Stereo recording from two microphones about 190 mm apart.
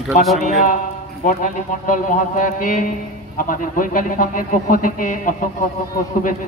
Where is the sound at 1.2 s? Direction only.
45° left (ahead or behind).